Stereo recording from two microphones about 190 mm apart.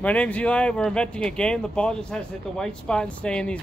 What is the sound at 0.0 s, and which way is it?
Speech, 5° left (ahead or behind).